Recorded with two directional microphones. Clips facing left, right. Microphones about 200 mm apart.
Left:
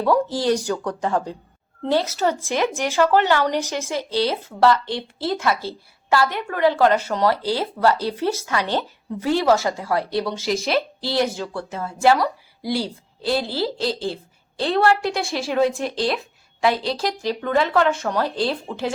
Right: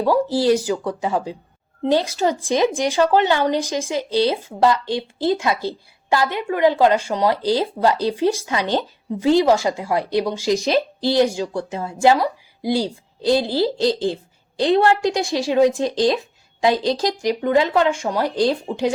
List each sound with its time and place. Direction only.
0.0 s a woman's voice: 10° right (ahead or behind)